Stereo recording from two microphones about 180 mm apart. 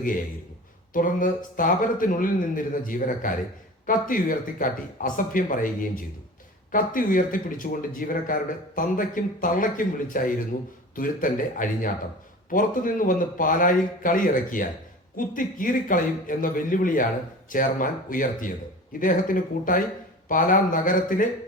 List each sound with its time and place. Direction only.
0.9 s speech: 50° left (ahead or behind)